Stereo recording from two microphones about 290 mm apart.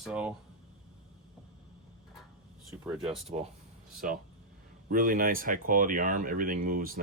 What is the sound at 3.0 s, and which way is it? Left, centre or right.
Speech, right.